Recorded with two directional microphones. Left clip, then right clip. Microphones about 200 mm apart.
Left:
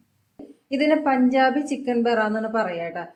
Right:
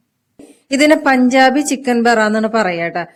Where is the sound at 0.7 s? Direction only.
60° right (ahead or behind).